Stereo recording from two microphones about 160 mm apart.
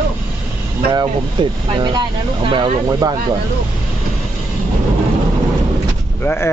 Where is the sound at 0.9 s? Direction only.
30° right (ahead or behind).